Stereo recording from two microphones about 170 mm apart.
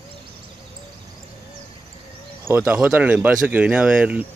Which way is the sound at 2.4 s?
15° right (ahead or behind).